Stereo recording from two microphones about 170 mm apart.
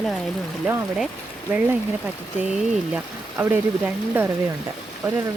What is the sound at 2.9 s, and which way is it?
Speech, 10° right (ahead or behind).